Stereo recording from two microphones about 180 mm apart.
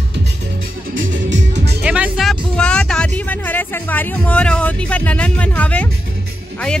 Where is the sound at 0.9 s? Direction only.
90° right.